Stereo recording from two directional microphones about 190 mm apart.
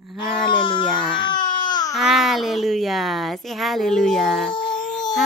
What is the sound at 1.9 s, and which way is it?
Speech, centre (ahead or behind).